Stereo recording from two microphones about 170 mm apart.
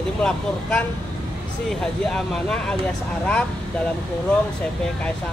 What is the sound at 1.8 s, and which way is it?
Speech, 5° left (ahead or behind).